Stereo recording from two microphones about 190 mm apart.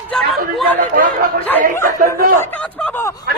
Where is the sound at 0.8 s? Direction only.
50° right (ahead or behind).